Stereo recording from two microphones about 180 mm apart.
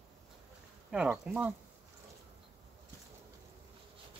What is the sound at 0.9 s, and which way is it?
Speech, 5° right (ahead or behind).